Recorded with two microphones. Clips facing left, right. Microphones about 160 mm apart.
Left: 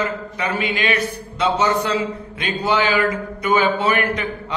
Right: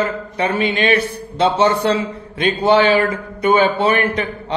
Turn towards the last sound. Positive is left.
turn(degrees=-30)  # may be behind; listen again after turning